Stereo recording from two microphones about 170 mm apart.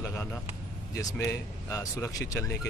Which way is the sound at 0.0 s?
15° left (ahead or behind).